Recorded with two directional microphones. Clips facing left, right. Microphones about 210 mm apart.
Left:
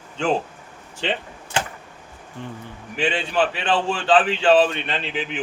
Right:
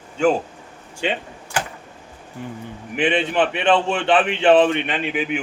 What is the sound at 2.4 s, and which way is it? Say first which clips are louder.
Speech: right 2 dB; 10° right (ahead or behind).